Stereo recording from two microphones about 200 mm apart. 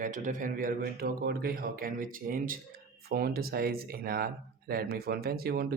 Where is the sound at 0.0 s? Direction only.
40° right (ahead or behind).